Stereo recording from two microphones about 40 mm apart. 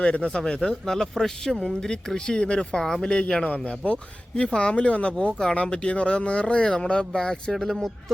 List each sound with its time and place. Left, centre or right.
0.0 s speech: left
1.2 s speech: centre
1.6 s speech: centre
7.5 s speech: centre